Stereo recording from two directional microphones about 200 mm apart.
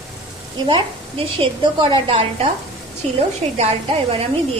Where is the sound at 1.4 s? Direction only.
25° right (ahead or behind).